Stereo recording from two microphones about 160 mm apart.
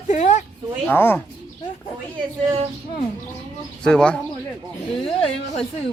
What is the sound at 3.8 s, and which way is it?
Speech, 5° left (ahead or behind).